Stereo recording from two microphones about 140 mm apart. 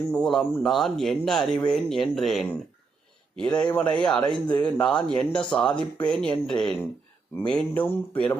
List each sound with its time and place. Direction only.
0.2 s speech: centre (ahead or behind)